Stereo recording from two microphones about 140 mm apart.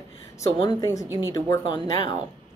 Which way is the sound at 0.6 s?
25° left (ahead or behind).